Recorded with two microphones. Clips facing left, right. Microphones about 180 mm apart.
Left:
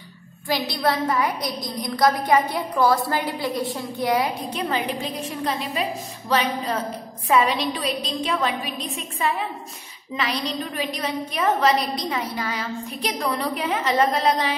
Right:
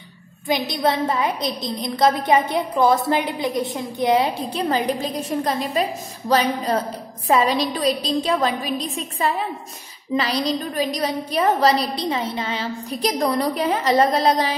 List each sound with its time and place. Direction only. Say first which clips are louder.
0.5 s a woman's voice: right 2 dB; 20° right (ahead or behind)
13.0 s a woman's voice: right 6 dB; 40° right (ahead or behind)